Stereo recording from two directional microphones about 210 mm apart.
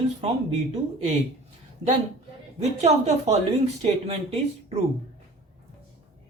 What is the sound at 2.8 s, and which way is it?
Speech, 30° right (ahead or behind).